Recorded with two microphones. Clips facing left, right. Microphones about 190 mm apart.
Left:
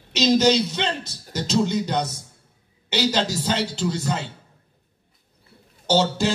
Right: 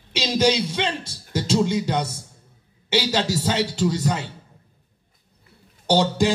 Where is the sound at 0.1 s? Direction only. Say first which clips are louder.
Left 3 dB; 10° right (ahead or behind).